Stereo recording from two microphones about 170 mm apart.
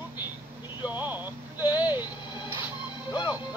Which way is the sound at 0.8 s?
10° right (ahead or behind).